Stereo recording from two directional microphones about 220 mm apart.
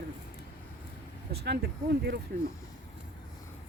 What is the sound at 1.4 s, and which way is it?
Speech, 45° right (ahead or behind).